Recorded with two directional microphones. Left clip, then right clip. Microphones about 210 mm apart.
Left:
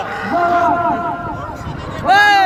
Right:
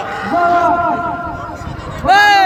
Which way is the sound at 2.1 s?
5° right (ahead or behind).